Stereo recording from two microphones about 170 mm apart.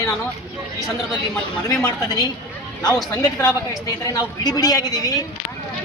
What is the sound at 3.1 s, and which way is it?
A woman's voice, 20° left (ahead or behind).